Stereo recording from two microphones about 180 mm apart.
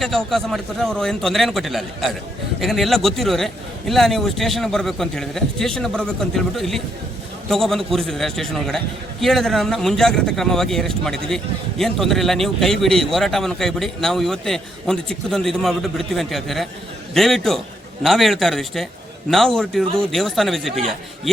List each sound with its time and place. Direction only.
0.0 s a man's voice: centre (ahead or behind)